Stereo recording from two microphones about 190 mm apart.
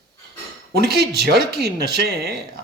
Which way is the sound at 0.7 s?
55° right (ahead or behind).